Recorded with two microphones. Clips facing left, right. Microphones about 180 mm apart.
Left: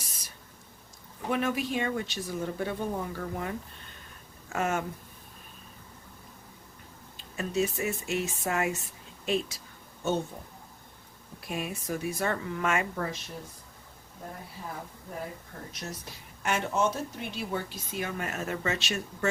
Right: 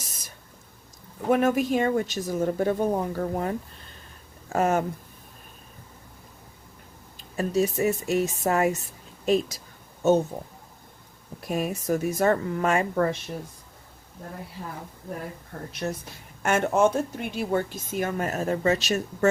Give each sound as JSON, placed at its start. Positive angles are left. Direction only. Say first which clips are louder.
{"t": 0.0, "sound": "a sound", "louder": "right 3 dB", "side_deg": -45}
{"t": 1.3, "sound": "a woman's voice", "louder": "right 8 dB", "side_deg": -45}
{"t": 7.3, "sound": "speech", "louder": "right 5 dB", "side_deg": -40}
{"t": 11.4, "sound": "speech", "louder": "right 8 dB", "side_deg": -40}
{"t": 15.7, "sound": "speech", "louder": "right 11 dB", "side_deg": -60}
{"t": 16.4, "sound": "a woman's voice", "louder": "right 7 dB", "side_deg": -50}